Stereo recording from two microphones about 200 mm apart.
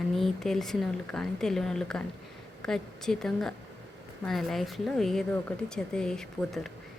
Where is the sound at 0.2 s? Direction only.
Centre (ahead or behind).